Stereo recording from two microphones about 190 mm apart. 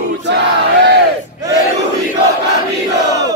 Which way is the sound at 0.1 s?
65° right (ahead or behind).